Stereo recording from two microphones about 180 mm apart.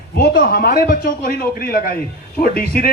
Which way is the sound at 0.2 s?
55° left (ahead or behind).